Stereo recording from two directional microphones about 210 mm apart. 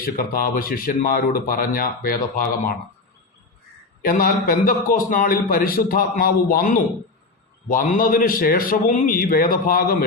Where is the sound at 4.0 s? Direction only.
45° left (ahead or behind).